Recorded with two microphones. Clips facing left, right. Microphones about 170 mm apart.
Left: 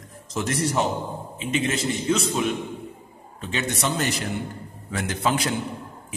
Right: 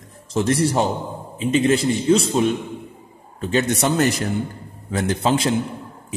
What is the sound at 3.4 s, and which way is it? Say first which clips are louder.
Speech: right 7 dB; 45° right (ahead or behind).